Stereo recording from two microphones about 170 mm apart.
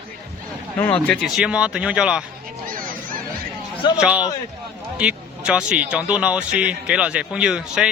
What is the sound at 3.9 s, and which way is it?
A man's voice, 5° right (ahead or behind).